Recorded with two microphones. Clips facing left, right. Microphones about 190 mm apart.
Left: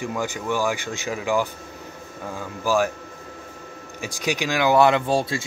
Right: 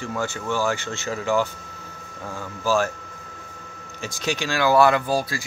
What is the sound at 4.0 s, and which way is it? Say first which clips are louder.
Speech: left 1 dB; 15° left (ahead or behind).